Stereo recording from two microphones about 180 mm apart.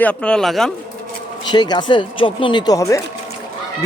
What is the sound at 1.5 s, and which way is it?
Speech, 25° left (ahead or behind).